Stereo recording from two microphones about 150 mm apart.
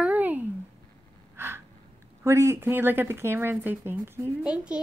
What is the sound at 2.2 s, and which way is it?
Speech, 20° right (ahead or behind).